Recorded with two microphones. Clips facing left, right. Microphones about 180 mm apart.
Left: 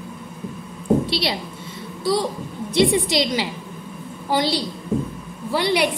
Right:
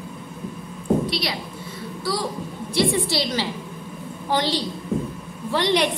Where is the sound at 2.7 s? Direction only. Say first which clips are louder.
Left 4 dB; 20° left (ahead or behind).